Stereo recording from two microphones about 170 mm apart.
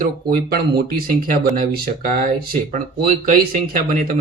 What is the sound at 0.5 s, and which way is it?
Speech, 65° right (ahead or behind).